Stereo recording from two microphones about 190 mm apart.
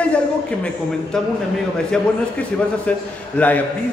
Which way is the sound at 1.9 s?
5° left (ahead or behind).